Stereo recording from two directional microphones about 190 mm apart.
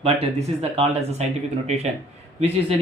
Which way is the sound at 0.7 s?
35° right (ahead or behind).